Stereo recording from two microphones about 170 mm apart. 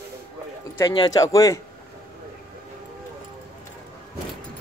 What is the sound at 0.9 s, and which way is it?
Speech, 25° left (ahead or behind).